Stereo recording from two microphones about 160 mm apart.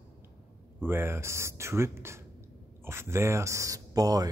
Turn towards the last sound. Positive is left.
turn(degrees=-20)  # may be behind; listen again after turning